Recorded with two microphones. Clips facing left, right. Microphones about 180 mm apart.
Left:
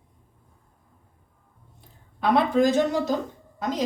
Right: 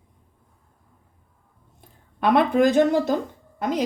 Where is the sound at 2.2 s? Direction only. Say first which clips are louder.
Right 2 dB; 60° right (ahead or behind).